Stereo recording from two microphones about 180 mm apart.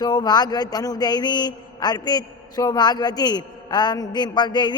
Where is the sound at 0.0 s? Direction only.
25° left (ahead or behind).